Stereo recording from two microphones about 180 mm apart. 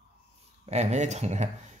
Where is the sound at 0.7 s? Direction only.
40° right (ahead or behind).